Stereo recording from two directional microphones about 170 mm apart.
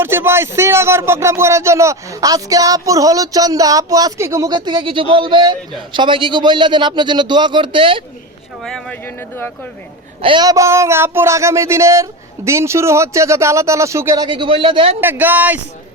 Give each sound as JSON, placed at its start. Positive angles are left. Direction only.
{"t": 0.0, "sound": "speech", "side_deg": -15}
{"t": 8.6, "sound": "speech", "side_deg": 5}
{"t": 10.2, "sound": "speech", "side_deg": -30}
{"t": 14.3, "sound": "speech", "side_deg": -30}
{"t": 15.0, "sound": "speech", "side_deg": -10}